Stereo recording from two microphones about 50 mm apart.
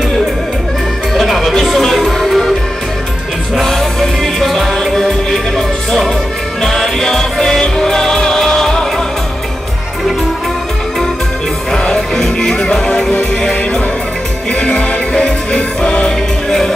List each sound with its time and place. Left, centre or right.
1.1 s music: centre
3.5 s music: centre
11.8 s music: centre